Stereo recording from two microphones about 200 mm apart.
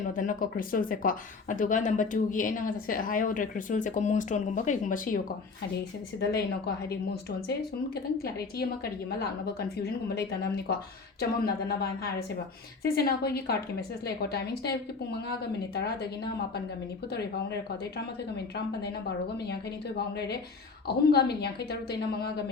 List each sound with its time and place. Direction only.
0.0 s speech: 40° left (ahead or behind)
6.1 s a woman's voice: 55° left (ahead or behind)
20.1 s a woman's voice: 55° left (ahead or behind)